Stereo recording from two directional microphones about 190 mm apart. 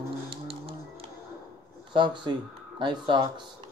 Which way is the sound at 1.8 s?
25° right (ahead or behind).